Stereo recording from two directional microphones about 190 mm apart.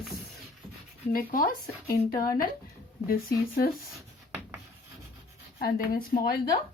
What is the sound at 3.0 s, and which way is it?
Speech, 50° left (ahead or behind).